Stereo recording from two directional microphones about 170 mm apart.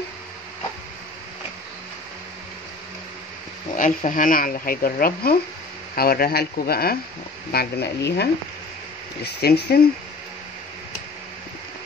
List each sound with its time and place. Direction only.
3.7 s speech: 50° left (ahead or behind)
7.5 s speech: 75° left (ahead or behind)